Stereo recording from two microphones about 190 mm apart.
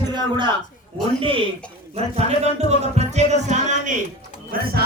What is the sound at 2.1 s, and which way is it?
Speech, 35° right (ahead or behind).